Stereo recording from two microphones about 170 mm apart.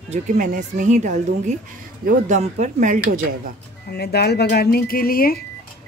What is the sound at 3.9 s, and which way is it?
Speech, 70° left (ahead or behind).